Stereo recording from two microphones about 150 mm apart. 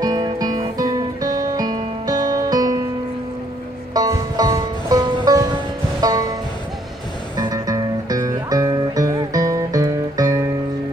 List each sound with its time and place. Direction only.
0.0 s music: 25° right (ahead or behind)
3.9 s music: 25° right (ahead or behind)
7.3 s music: 25° right (ahead or behind)